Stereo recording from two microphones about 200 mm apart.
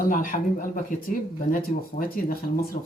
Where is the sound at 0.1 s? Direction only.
45° left (ahead or behind).